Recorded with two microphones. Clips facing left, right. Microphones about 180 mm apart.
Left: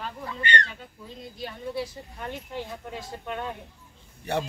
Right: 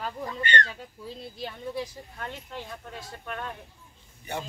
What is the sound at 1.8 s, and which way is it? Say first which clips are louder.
Speech: left 2 dB; 10° left (ahead or behind).